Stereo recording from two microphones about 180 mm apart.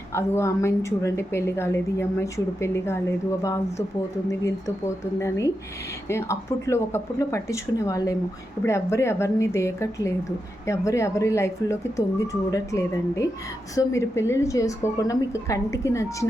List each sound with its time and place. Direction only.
0.1 s a woman's voice: 15° left (ahead or behind)
6.1 s a woman's voice: 15° left (ahead or behind)